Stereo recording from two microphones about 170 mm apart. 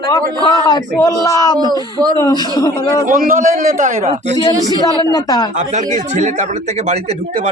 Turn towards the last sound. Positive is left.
turn(degrees=-40)  # may be behind; listen again after turning